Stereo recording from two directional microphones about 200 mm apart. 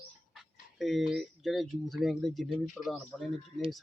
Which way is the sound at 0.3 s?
Centre (ahead or behind).